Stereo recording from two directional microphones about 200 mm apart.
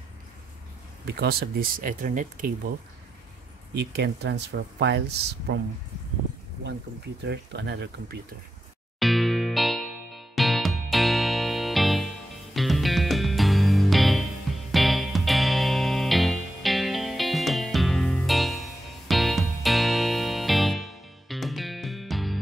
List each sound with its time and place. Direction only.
1.0 s speech: 55° right (ahead or behind)
3.7 s speech: 55° right (ahead or behind)
7.2 s speech: 60° right (ahead or behind)
9.0 s music: centre (ahead or behind)